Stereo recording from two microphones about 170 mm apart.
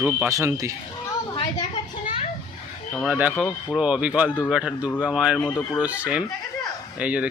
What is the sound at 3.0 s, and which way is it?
Speech, 10° right (ahead or behind).